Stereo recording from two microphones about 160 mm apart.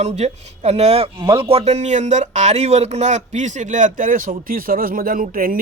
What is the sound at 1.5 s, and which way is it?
Speech, 40° right (ahead or behind).